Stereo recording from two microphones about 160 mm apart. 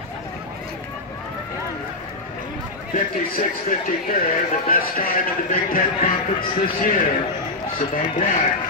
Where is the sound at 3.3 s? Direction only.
60° left (ahead or behind).